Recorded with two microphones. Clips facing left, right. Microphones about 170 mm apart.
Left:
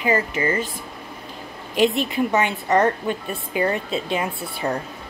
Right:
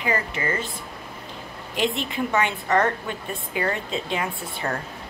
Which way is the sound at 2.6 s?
20° left (ahead or behind).